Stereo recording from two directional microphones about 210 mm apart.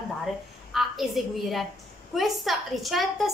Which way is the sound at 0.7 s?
Centre (ahead or behind).